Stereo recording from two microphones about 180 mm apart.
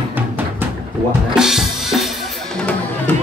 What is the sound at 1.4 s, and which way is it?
Drum kit, centre (ahead or behind).